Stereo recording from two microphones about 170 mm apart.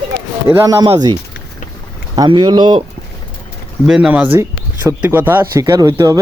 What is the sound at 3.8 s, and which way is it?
Speech, 5° right (ahead or behind).